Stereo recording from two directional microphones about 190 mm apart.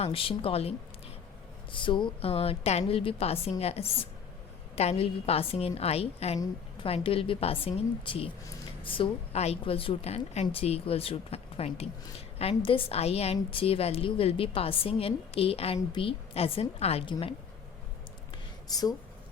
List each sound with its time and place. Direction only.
0.0 s a woman's voice: 30° left (ahead or behind)
1.7 s a woman's voice: 25° left (ahead or behind)
18.7 s a woman's voice: 20° left (ahead or behind)